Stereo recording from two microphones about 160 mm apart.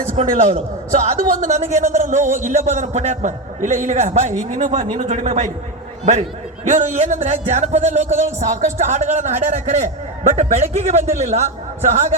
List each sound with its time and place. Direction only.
0.2 s a man's voice: 45° right (ahead or behind)
6.7 s a man's voice: 50° right (ahead or behind)